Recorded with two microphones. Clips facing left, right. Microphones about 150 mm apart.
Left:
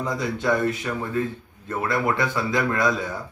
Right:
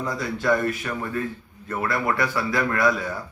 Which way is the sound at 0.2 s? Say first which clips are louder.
Right 1 dB; 20° left (ahead or behind).